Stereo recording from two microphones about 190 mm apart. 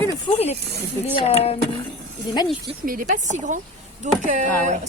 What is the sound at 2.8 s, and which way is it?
A woman's voice, 50° right (ahead or behind).